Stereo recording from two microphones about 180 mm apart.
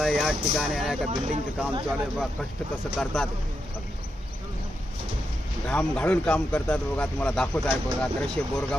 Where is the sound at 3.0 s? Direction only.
5° left (ahead or behind).